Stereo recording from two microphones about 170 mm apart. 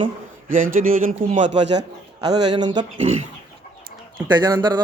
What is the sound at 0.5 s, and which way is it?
Speech, 50° right (ahead or behind).